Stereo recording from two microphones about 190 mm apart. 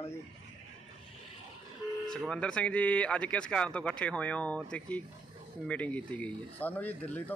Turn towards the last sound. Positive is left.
turn(degrees=10)  # may be behind; listen again after turning